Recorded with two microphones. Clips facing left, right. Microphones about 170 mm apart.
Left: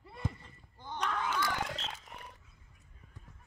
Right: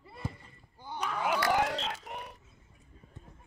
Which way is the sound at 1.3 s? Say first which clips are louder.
Right 7 dB; 75° right (ahead or behind).